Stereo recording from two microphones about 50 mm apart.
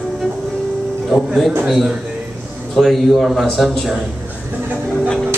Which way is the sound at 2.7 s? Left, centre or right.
Centre.